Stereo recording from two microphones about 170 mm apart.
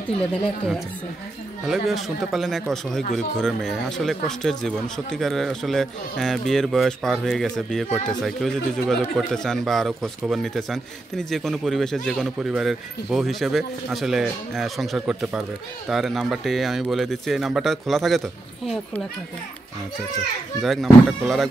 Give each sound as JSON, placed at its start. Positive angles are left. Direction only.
{"t": 0.3, "sound": "a man's voice", "side_deg": 0}
{"t": 20.6, "sound": "a man's voice", "side_deg": 0}